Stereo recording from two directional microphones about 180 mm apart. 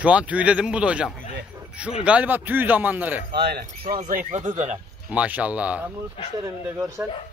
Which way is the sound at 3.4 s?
65° right (ahead or behind).